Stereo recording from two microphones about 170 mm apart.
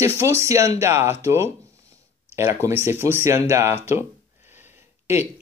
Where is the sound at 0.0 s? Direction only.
15° right (ahead or behind).